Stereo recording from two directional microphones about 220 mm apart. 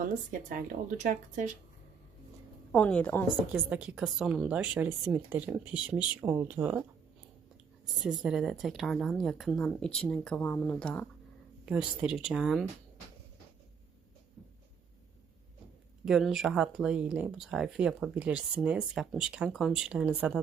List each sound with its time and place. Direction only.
0.0 s speech: 35° right (ahead or behind)
2.7 s a woman's voice: 5° left (ahead or behind)
3.5 s a woman's voice: 5° right (ahead or behind)
7.9 s speech: centre (ahead or behind)
16.0 s speech: centre (ahead or behind)